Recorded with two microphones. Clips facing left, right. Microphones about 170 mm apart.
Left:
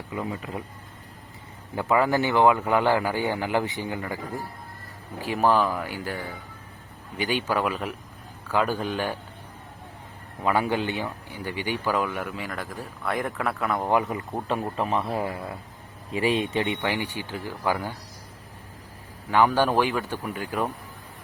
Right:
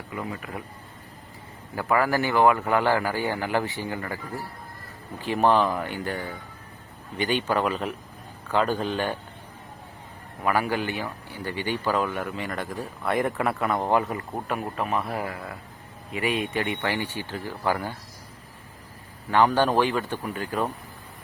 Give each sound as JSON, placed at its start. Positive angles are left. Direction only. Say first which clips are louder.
{"t": 0.1, "sound": "speech", "louder": "left 2 dB", "side_deg": 20}
{"t": 1.7, "sound": "a man's voice", "louder": "left 1 dB", "side_deg": 20}
{"t": 10.4, "sound": "speech", "louder": "left 1 dB", "side_deg": 20}
{"t": 13.9, "sound": "a man's voice", "louder": "left 2 dB", "side_deg": 15}
{"t": 14.5, "sound": "a man's voice", "louder": "left 2 dB", "side_deg": 25}
{"t": 19.5, "sound": "a man's voice", "louder": "right 1 dB", "side_deg": 10}